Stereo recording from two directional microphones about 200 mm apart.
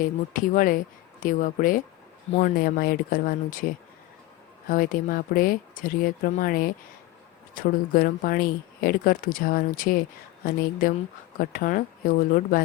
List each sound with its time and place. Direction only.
0.0 s speech: 40° left (ahead or behind)
4.7 s speech: 45° left (ahead or behind)